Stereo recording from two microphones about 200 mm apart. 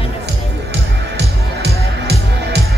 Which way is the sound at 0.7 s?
55° right (ahead or behind).